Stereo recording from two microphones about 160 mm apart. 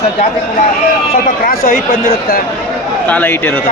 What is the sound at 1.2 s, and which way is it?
Speech, 65° left (ahead or behind).